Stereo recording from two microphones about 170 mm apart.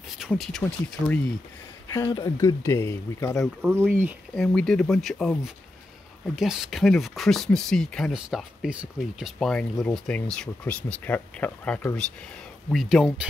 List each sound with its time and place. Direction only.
0.2 s speech: centre (ahead or behind)
2.0 s speech: 25° left (ahead or behind)
3.6 s speech: 10° right (ahead or behind)
4.4 s speech: 5° left (ahead or behind)